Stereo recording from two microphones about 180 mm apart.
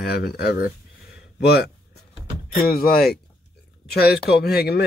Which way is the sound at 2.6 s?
55° left (ahead or behind).